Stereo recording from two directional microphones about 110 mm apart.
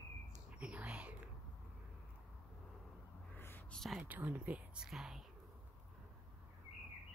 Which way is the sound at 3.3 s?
20° left (ahead or behind).